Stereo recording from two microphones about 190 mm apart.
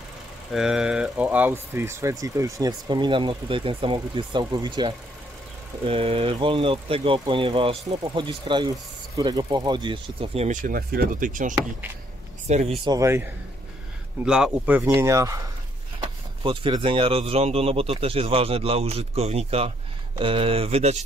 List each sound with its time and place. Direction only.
0.5 s speech: 5° right (ahead or behind); by 10.6 s 35° right (ahead or behind)
10.6 s speech: 50° right (ahead or behind)
12.4 s speech: 35° right (ahead or behind)
12.9 s speech: 15° right (ahead or behind)
15.0 s speech: 15° right (ahead or behind); by 21.0 s 35° right (ahead or behind)